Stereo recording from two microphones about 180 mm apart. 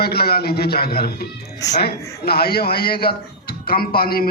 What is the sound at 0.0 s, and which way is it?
A man's voice, 60° left (ahead or behind).